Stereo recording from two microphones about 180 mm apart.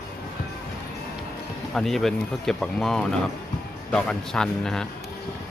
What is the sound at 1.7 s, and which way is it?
Speech, centre (ahead or behind).